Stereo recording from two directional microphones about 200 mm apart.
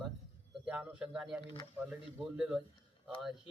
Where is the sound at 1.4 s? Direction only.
25° left (ahead or behind).